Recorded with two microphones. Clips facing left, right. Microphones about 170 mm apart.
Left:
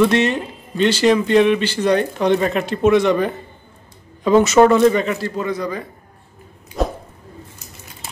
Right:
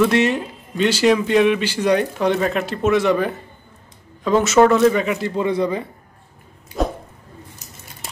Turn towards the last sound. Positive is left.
turn(degrees=0)  # may be behind; listen again after turning